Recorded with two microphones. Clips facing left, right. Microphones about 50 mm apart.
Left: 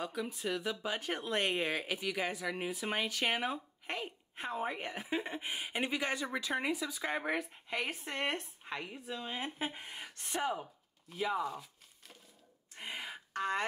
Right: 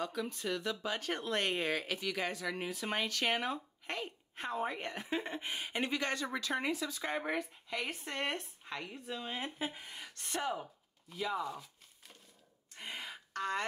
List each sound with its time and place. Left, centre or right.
0.0 s speech: centre
9.0 s speech: centre
9.6 s speech: left
12.7 s a sound: centre